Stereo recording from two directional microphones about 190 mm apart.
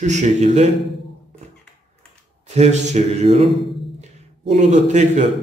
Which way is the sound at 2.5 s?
35° right (ahead or behind).